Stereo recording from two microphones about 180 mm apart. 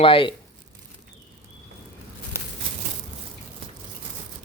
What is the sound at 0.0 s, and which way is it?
Speech, 30° left (ahead or behind).